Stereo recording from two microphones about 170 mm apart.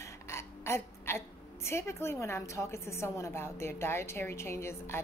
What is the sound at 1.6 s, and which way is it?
A woman's voice, 15° left (ahead or behind).